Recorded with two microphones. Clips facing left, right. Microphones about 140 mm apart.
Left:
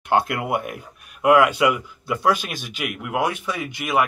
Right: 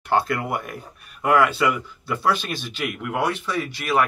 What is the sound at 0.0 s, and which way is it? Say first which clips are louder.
Speech: left 1 dB; 20° left (ahead or behind).